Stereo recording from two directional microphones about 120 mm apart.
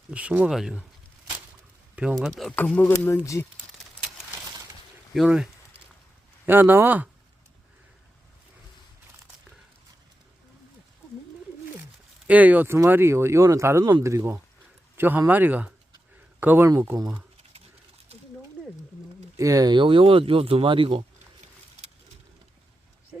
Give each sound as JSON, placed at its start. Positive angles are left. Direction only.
{"t": 0.1, "sound": "speech", "side_deg": -10}
{"t": 2.0, "sound": "speech", "side_deg": -10}
{"t": 2.6, "sound": "speech", "side_deg": 15}
{"t": 5.1, "sound": "speech", "side_deg": -5}
{"t": 6.4, "sound": "speech", "side_deg": -15}
{"t": 12.3, "sound": "speech", "side_deg": -15}
{"t": 18.6, "sound": "a sound", "side_deg": -15}
{"t": 19.4, "sound": "speech", "side_deg": -30}